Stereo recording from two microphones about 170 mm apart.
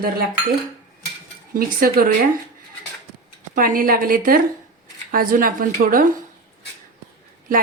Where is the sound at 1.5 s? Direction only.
60° right (ahead or behind).